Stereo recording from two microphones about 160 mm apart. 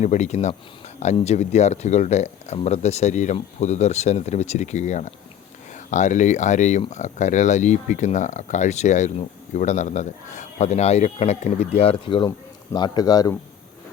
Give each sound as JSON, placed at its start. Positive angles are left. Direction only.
{"t": 0.0, "sound": "speech", "side_deg": 45}